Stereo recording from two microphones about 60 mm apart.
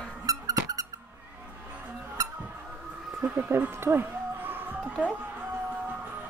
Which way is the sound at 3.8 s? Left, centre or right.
Right.